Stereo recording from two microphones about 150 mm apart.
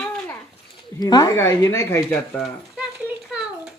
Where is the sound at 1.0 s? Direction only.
25° left (ahead or behind).